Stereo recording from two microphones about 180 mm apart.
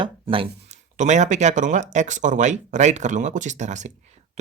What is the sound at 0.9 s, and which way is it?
Speech, 40° right (ahead or behind).